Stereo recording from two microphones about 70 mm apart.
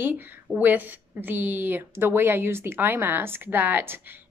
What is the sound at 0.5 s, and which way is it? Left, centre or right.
A woman's voice, right.